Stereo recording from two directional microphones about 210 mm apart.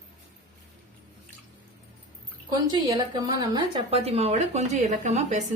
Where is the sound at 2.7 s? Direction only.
20° right (ahead or behind).